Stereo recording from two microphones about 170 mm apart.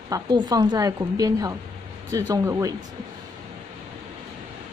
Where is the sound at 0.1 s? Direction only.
20° right (ahead or behind).